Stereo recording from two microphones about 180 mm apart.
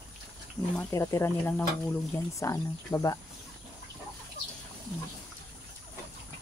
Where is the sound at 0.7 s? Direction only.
15° left (ahead or behind).